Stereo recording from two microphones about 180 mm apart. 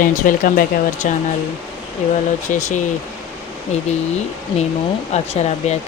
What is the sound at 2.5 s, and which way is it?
Speech, 40° left (ahead or behind).